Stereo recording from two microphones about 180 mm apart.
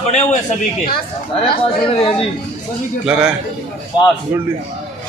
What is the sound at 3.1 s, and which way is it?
Speech, 5° right (ahead or behind).